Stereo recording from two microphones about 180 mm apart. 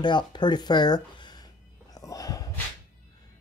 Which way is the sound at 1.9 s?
20° left (ahead or behind).